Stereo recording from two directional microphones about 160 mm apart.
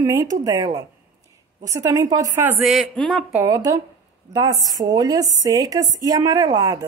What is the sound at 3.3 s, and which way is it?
A woman's voice, 20° right (ahead or behind).